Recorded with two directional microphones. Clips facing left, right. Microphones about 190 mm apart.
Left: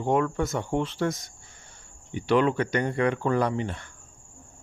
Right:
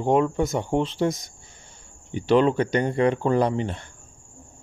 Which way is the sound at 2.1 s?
30° right (ahead or behind).